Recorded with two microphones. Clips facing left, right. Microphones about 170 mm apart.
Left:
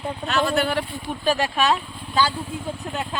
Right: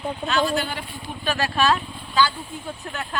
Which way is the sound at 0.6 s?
65° left (ahead or behind).